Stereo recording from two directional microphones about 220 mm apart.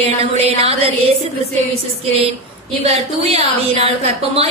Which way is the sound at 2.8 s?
25° right (ahead or behind).